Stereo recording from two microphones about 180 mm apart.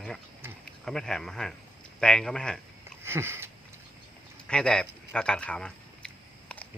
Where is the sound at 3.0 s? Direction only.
15° right (ahead or behind).